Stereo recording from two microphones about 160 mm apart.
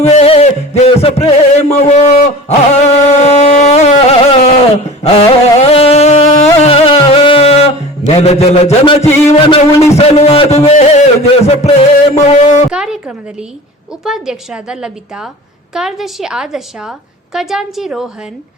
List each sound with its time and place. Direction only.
0.0 s a man's voice: 40° left (ahead or behind)
2.5 s carnatic music: 40° left (ahead or behind)
5.0 s music: 35° left (ahead or behind)
9.5 s a man's voice: 40° left (ahead or behind)
12.7 s a sound: 5° right (ahead or behind)
14.0 s a woman's voice: 5° right (ahead or behind)